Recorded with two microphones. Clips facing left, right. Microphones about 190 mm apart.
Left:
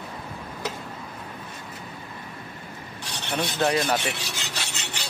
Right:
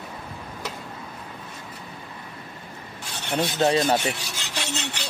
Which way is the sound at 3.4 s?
25° right (ahead or behind).